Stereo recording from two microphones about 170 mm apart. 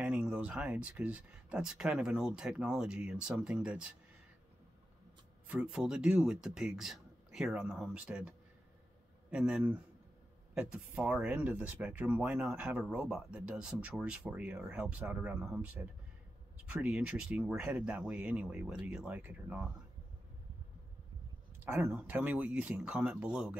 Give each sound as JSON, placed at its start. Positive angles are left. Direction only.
{"t": 0.0, "sound": "speech", "side_deg": -5}
{"t": 5.5, "sound": "speech", "side_deg": -5}
{"t": 21.6, "sound": "speech", "side_deg": -10}